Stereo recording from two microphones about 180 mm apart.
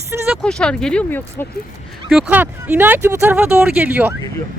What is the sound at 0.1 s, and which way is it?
Speech, 10° right (ahead or behind).